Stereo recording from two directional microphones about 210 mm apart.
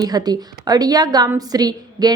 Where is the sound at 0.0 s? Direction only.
20° right (ahead or behind).